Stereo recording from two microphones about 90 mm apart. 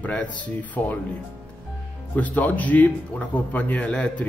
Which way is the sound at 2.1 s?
15° left (ahead or behind).